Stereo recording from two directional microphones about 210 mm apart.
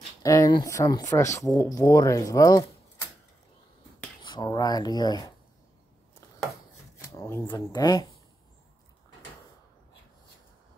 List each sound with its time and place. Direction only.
0.2 s speech: 15° left (ahead or behind)
4.2 s speech: 20° left (ahead or behind)
7.0 s shuffling cards: 15° left (ahead or behind)
7.4 s speech: 15° left (ahead or behind)